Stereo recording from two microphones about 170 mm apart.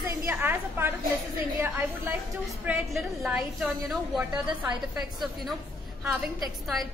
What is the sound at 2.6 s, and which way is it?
A woman's voice, 5° right (ahead or behind).